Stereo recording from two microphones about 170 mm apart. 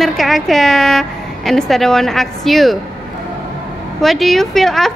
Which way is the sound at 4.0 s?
Centre (ahead or behind).